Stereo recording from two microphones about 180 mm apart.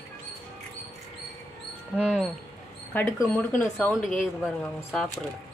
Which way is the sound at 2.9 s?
10° left (ahead or behind).